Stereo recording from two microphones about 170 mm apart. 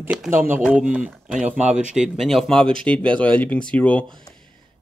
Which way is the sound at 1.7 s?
5° right (ahead or behind).